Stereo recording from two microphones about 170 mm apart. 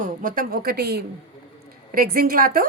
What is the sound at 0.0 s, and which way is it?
A woman's voice, 50° right (ahead or behind).